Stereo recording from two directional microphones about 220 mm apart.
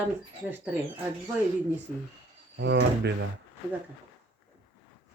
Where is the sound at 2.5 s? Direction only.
50° right (ahead or behind).